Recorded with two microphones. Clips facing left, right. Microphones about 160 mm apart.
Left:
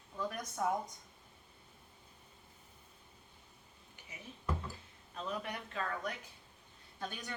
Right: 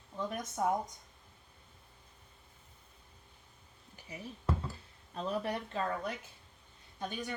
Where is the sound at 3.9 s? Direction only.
35° right (ahead or behind).